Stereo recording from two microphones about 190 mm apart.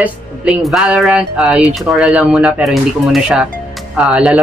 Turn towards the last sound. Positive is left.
turn(degrees=-5)  # may be behind; listen again after turning